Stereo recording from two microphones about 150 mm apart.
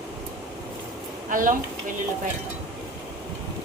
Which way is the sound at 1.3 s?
65° right (ahead or behind).